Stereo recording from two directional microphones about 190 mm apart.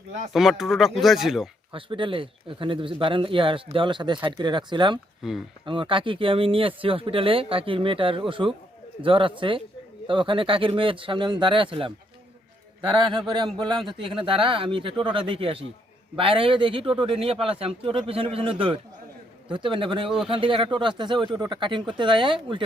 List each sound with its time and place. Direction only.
0.3 s speech: centre (ahead or behind)
1.7 s speech: 25° right (ahead or behind)
5.2 s speech: centre (ahead or behind)
5.6 s speech: 25° right (ahead or behind)
13.0 s speech: 25° right (ahead or behind)
20.1 s speech: centre (ahead or behind)
20.3 s speech: 30° right (ahead or behind)